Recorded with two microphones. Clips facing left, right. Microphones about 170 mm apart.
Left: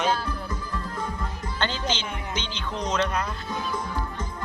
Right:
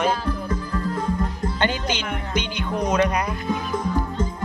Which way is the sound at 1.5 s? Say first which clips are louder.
Right 3 dB; 10° right (ahead or behind).